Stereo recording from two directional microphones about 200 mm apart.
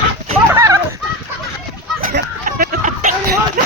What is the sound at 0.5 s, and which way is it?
Speech, 15° right (ahead or behind).